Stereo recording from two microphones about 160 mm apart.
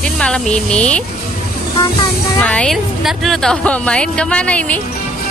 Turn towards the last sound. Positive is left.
turn(degrees=10)  # may be behind; listen again after turning